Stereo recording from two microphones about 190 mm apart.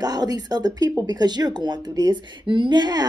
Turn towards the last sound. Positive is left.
turn(degrees=-20)  # may be behind; listen again after turning